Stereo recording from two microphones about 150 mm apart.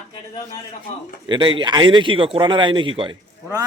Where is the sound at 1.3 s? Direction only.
35° right (ahead or behind).